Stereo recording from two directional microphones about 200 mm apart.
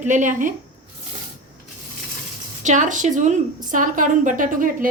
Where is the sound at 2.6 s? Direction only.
40° right (ahead or behind).